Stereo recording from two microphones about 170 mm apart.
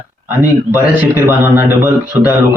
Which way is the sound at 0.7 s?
10° right (ahead or behind).